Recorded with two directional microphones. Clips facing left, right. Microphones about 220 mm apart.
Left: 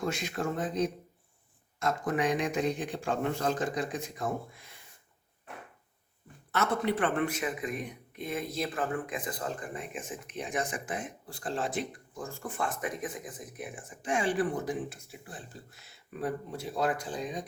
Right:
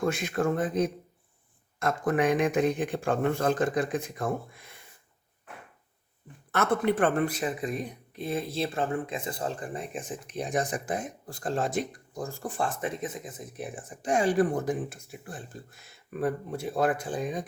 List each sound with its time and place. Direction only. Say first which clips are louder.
0.0 s speech: right 5 dB; 55° right (ahead or behind)
6.5 s speech: right 4 dB; 50° right (ahead or behind)